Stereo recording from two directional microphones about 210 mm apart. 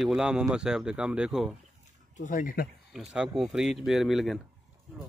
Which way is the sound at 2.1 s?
40° left (ahead or behind).